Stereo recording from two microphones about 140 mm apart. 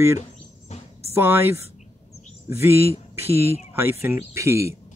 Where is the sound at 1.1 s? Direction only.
15° right (ahead or behind).